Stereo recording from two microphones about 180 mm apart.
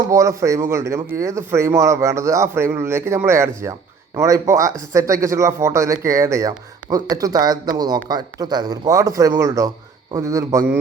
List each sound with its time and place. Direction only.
0.1 s speech: 15° right (ahead or behind)